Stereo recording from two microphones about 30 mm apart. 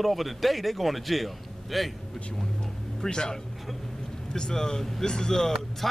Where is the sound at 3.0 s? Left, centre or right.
Left.